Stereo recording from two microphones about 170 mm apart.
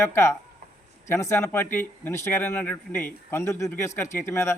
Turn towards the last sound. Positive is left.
turn(degrees=15)  # may be behind; listen again after turning